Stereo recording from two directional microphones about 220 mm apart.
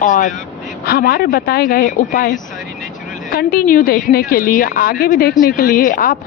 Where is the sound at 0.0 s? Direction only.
35° left (ahead or behind).